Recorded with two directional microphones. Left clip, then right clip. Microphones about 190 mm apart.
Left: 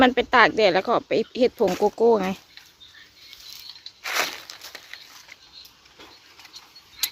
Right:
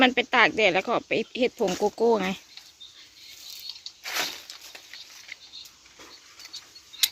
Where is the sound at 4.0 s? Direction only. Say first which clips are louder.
Left 5 dB; 40° left (ahead or behind).